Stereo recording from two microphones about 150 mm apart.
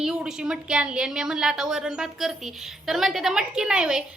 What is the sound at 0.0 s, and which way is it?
A woman's voice, 5° right (ahead or behind).